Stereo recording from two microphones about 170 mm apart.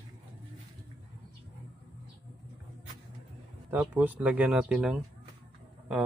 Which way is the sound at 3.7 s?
10° right (ahead or behind).